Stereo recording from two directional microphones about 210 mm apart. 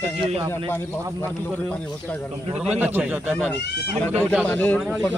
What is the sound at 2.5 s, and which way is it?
Speech, 5° right (ahead or behind).